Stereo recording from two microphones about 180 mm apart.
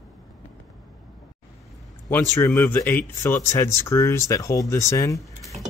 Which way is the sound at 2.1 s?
15° left (ahead or behind).